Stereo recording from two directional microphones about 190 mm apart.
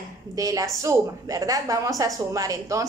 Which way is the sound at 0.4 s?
20° right (ahead or behind).